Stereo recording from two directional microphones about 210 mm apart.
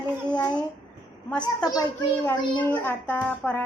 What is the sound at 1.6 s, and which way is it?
A child's voice, 20° left (ahead or behind).